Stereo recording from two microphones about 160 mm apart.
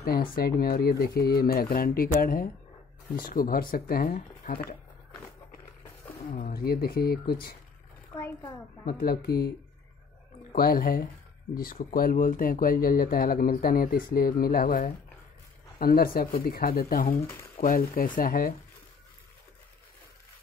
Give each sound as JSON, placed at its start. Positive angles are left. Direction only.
{"t": 0.0, "sound": "speech", "side_deg": 70}
{"t": 6.0, "sound": "speech", "side_deg": 60}
{"t": 8.1, "sound": "a child's voice", "side_deg": 20}
{"t": 8.8, "sound": "speech", "side_deg": 70}
{"t": 10.5, "sound": "speech", "side_deg": 65}